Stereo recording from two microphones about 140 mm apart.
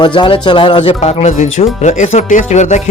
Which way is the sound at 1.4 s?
65° left (ahead or behind).